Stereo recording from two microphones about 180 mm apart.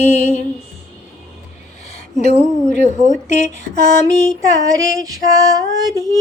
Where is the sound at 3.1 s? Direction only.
45° left (ahead or behind).